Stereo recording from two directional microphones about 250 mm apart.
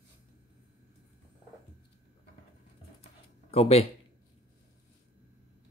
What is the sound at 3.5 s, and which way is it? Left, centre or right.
Speech, left.